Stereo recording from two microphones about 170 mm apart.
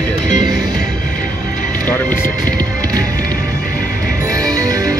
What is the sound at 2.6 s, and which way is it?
Music, 20° right (ahead or behind).